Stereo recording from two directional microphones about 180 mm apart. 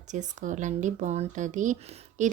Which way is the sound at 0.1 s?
45° right (ahead or behind).